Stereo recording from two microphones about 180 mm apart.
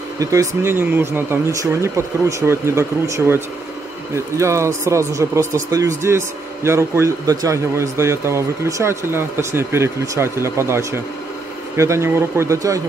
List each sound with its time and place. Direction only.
0.2 s speech: 15° right (ahead or behind)